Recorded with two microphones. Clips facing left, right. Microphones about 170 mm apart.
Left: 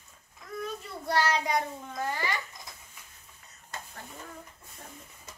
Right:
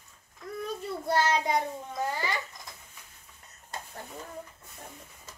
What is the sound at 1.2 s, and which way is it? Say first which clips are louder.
Child singing: even; 25° right (ahead or behind).